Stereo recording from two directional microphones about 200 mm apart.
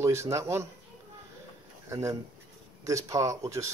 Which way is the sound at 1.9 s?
15° right (ahead or behind).